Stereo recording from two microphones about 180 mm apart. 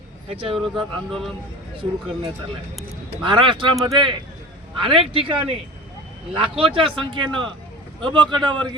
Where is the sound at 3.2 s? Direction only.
30° right (ahead or behind).